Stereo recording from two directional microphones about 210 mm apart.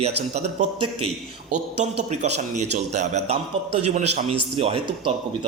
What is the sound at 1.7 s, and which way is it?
A man's voice, 30° right (ahead or behind).